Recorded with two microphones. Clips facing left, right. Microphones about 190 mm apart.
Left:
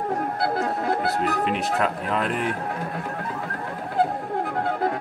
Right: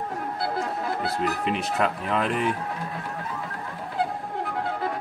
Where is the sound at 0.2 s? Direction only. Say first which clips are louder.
Left 4 dB; 55° left (ahead or behind).